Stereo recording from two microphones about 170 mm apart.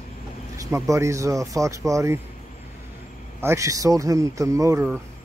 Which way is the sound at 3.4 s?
20° right (ahead or behind).